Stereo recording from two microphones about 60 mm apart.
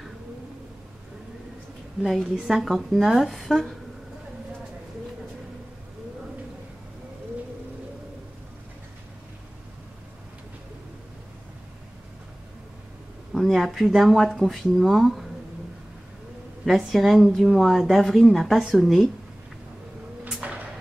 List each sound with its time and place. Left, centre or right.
2.4 s a woman's voice: centre
13.3 s speech: centre
16.6 s a woman's voice: centre
20.4 s music: right